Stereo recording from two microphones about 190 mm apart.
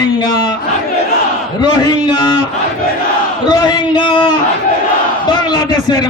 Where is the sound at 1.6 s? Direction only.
25° left (ahead or behind).